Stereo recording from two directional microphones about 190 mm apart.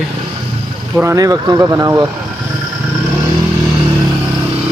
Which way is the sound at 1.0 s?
15° right (ahead or behind).